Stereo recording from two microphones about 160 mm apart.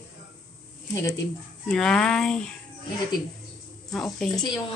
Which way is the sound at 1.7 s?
5° left (ahead or behind).